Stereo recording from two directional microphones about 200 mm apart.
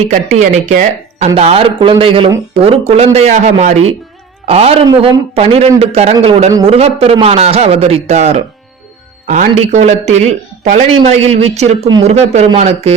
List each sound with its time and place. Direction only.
0.0 s a man's voice: 35° right (ahead or behind)